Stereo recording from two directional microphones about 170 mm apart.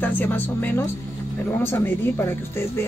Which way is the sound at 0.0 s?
10° left (ahead or behind).